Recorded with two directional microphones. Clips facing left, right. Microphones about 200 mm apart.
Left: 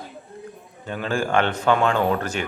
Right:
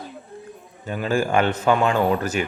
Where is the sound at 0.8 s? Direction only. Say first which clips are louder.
Right 3 dB; 10° right (ahead or behind).